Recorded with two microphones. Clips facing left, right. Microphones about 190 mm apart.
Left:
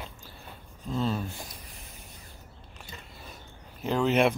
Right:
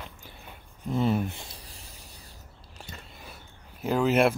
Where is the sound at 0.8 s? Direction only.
15° right (ahead or behind); by 2.0 s 30° right (ahead or behind).